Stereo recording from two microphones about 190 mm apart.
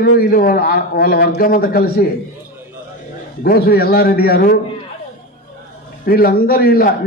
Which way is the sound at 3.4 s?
55° left (ahead or behind).